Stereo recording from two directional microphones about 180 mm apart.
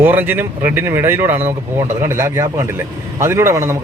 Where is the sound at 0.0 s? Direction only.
10° right (ahead or behind).